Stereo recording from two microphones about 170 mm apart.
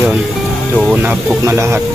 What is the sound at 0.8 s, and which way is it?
Speech, 10° right (ahead or behind).